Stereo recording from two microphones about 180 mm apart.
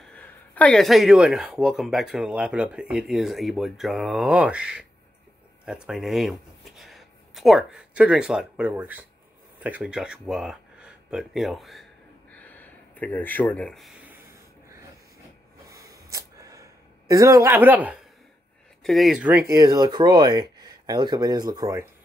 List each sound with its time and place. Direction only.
0.0 s speech: 5° left (ahead or behind); by 9.0 s 10° right (ahead or behind)
9.6 s a sound: 10° right (ahead or behind)
15.7 s gasp: 20° right (ahead or behind)
18.8 s speech: centre (ahead or behind)
19.4 s speech: 20° right (ahead or behind)